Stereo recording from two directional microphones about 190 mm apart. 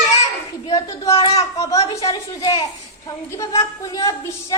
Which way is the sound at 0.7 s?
20° left (ahead or behind).